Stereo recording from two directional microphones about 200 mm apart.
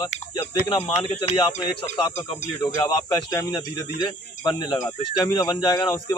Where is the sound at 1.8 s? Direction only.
20° left (ahead or behind).